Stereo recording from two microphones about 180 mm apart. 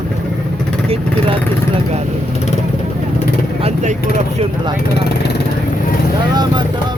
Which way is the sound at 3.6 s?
40° right (ahead or behind).